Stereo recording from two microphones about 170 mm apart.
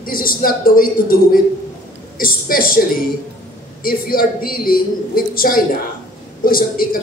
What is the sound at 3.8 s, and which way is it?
A woman's voice, 60° left (ahead or behind).